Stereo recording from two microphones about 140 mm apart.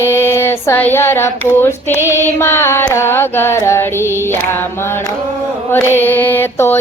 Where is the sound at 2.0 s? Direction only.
20° left (ahead or behind).